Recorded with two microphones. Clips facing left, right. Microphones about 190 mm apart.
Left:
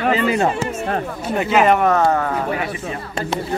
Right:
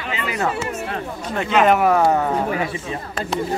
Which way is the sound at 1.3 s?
5° left (ahead or behind).